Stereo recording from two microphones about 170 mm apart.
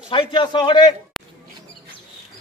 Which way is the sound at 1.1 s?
Centre (ahead or behind).